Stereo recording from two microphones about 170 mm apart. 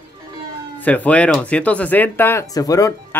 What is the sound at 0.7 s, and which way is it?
Speech, 10° left (ahead or behind).